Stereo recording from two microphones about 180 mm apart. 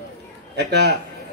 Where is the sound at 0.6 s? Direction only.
70° right (ahead or behind).